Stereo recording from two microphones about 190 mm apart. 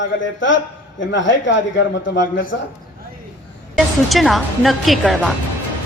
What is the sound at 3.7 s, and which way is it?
A woman's voice, centre (ahead or behind).